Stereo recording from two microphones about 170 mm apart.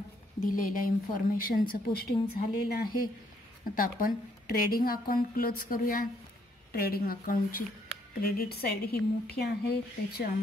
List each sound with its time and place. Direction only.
0.5 s a woman's voice: 55° left (ahead or behind)